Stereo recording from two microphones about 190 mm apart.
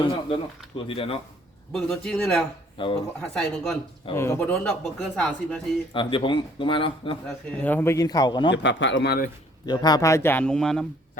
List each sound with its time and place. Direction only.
0.9 s speech: 30° left (ahead or behind)
1.7 s speech: centre (ahead or behind)
2.8 s speech: 30° left (ahead or behind)
3.2 s speech: 5° left (ahead or behind)
4.1 s speech: 15° left (ahead or behind)
5.9 s speech: 25° left (ahead or behind)
7.3 s a man's voice: 10° left (ahead or behind); by 8.5 s 25° left (ahead or behind)
8.5 s speech: 70° left (ahead or behind); by 9.3 s 55° left (ahead or behind)
9.6 s a man's voice: 20° left (ahead or behind); by 10.8 s 5° left (ahead or behind)